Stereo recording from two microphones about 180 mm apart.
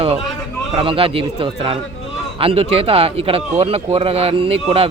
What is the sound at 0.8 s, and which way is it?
Speech, 30° right (ahead or behind).